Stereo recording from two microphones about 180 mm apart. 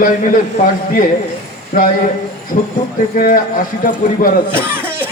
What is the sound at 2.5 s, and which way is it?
A man's voice, 50° left (ahead or behind).